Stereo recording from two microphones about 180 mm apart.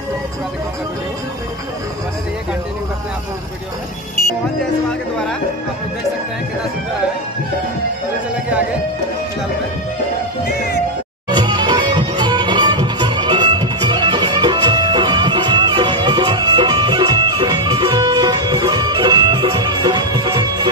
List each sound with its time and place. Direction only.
11.2 s music: 25° right (ahead or behind)